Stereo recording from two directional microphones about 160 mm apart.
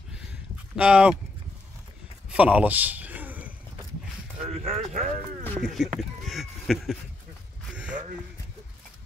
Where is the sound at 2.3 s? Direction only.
10° right (ahead or behind).